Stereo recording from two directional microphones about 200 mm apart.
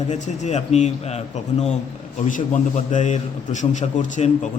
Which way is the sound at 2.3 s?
35° left (ahead or behind).